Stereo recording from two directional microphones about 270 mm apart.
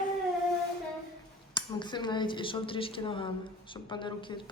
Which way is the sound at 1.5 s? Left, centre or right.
Centre.